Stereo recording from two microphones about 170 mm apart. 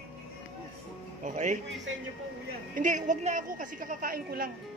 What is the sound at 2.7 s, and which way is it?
A woman's voice, 50° right (ahead or behind).